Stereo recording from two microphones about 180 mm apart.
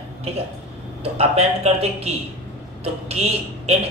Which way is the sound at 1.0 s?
35° right (ahead or behind).